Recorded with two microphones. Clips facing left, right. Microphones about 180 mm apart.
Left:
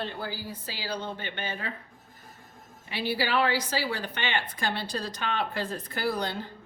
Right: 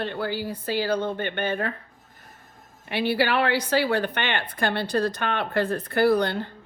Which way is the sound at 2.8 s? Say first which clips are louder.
Right 6 dB; 60° right (ahead or behind).